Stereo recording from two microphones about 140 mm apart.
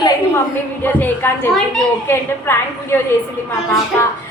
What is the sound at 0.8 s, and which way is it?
A woman's voice, 15° left (ahead or behind).